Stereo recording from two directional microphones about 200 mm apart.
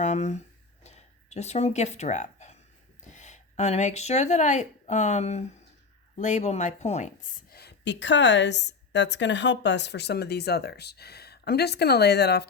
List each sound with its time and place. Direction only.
0.0 s speech: 35° left (ahead or behind)
0.9 s a sound: 35° left (ahead or behind)
3.0 s a woman's voice: 35° left (ahead or behind); by 12.5 s 55° left (ahead or behind)